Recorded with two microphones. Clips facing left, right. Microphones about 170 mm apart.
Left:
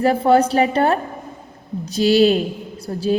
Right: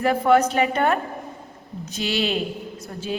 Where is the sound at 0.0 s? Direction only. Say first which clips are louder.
Left 3 dB; 30° left (ahead or behind).